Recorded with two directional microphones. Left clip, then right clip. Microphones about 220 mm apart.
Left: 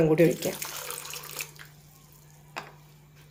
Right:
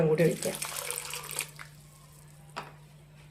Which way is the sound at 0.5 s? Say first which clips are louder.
Even; 10° right (ahead or behind).